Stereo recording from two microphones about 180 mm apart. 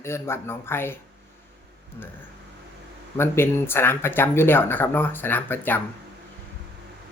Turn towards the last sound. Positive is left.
turn(degrees=10)  # may be behind; listen again after turning